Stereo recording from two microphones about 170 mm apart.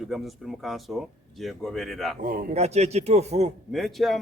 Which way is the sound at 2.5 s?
40° right (ahead or behind).